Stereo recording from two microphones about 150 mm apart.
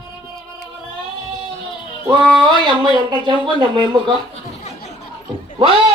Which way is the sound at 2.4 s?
30° right (ahead or behind).